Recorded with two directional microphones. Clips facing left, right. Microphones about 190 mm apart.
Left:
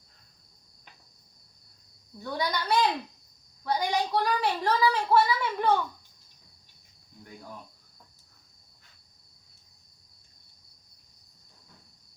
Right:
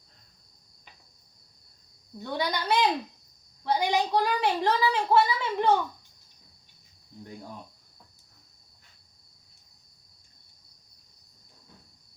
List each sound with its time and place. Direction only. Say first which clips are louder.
2.1 s speech: right 1 dB; 25° right (ahead or behind)